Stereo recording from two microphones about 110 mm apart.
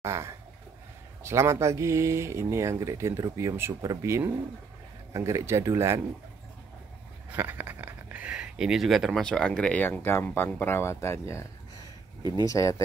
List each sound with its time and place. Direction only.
0.0 s a sound: 25° right (ahead or behind)
1.2 s speech: 25° right (ahead or behind)
7.2 s speech: 15° right (ahead or behind); by 12.8 s 30° left (ahead or behind)